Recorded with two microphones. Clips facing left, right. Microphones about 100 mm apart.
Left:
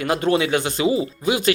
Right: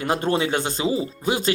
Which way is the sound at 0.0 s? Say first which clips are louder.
Left 2 dB; 40° right (ahead or behind).